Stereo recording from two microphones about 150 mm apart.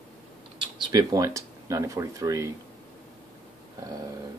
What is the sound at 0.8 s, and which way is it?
Speech, 25° right (ahead or behind).